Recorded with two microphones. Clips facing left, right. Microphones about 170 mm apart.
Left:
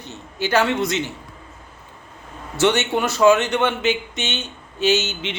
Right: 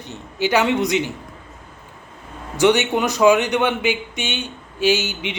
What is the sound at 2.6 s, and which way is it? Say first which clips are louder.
A man's voice: right 2 dB; 15° right (ahead or behind).